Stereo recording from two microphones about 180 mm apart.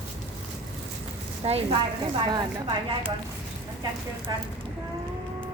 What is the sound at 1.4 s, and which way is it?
Speech, 35° right (ahead or behind).